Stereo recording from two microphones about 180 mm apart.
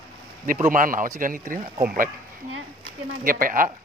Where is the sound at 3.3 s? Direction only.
50° right (ahead or behind).